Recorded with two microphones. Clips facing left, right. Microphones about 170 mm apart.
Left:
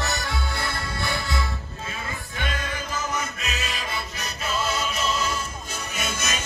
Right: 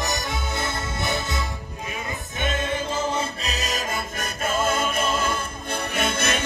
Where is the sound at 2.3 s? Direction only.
25° right (ahead or behind).